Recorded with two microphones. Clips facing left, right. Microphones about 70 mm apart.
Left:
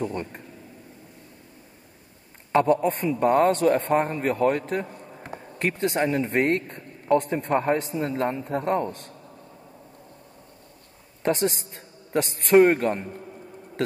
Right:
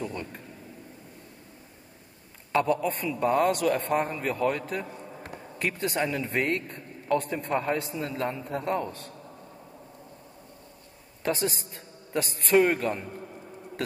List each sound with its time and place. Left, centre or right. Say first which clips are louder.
0.0 s a man's voice: left 5 dB; left
2.5 s a man's voice: left 5 dB; left
3.2 s a man's voice: left 4 dB; left
11.2 s a man's voice: left 5 dB; left